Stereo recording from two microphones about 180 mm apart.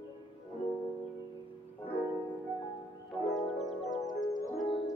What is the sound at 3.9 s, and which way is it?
Music, centre (ahead or behind).